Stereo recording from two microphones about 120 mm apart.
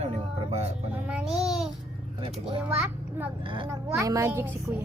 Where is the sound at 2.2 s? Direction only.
50° right (ahead or behind).